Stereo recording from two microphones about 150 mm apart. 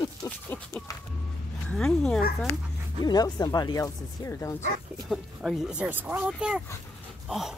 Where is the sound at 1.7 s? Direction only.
5° left (ahead or behind).